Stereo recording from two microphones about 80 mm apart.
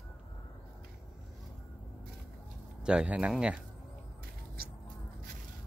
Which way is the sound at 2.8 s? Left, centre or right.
Centre.